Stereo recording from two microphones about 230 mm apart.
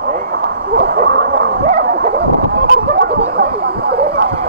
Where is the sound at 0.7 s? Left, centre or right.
Right.